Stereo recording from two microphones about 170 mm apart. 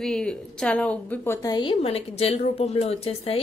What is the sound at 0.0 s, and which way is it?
A woman's voice, 5° left (ahead or behind).